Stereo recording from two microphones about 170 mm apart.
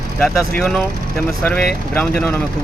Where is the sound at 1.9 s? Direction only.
10° left (ahead or behind).